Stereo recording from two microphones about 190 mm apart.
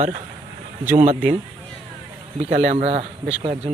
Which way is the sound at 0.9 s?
35° right (ahead or behind).